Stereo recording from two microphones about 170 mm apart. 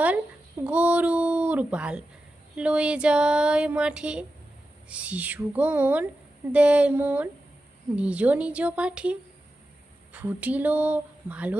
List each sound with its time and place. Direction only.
0.6 s a child's voice: 10° right (ahead or behind)
2.6 s a sound: 5° right (ahead or behind)
4.9 s a child's voice: 5° right (ahead or behind)